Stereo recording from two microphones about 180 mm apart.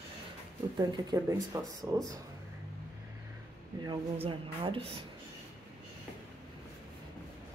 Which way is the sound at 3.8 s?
25° right (ahead or behind).